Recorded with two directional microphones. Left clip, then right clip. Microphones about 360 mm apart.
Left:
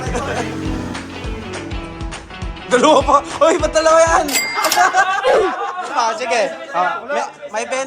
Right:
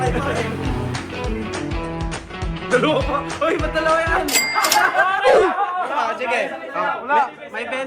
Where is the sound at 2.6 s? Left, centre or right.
Centre.